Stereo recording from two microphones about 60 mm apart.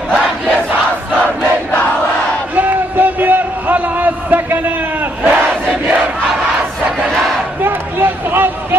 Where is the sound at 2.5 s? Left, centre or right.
Right.